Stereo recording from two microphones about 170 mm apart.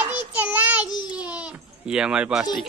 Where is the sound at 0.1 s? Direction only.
10° right (ahead or behind).